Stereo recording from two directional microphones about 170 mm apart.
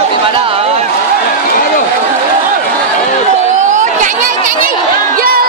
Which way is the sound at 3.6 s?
45° right (ahead or behind).